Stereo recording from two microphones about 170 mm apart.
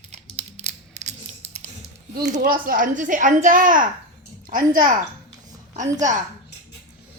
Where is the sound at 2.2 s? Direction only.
50° right (ahead or behind).